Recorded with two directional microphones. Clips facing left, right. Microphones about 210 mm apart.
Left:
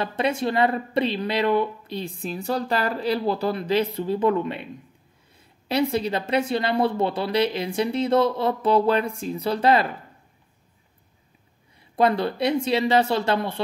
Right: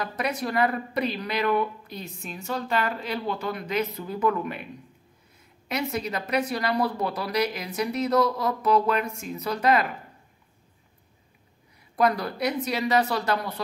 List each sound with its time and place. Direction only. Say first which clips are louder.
0.0 s speech: left 5 dB; 30° left (ahead or behind)
11.9 s speech: left 3 dB; 25° left (ahead or behind)